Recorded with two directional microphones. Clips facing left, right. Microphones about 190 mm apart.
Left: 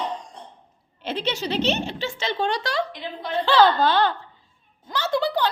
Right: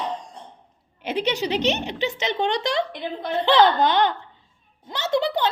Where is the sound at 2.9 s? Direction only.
55° right (ahead or behind).